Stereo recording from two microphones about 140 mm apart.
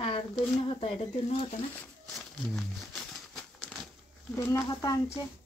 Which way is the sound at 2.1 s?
Centre (ahead or behind).